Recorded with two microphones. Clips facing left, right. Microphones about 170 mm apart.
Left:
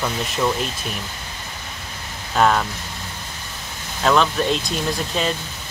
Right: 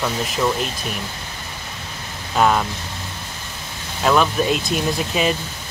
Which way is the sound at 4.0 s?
5° right (ahead or behind).